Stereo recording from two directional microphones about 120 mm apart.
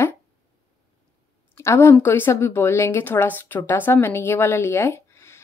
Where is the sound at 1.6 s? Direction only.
20° left (ahead or behind).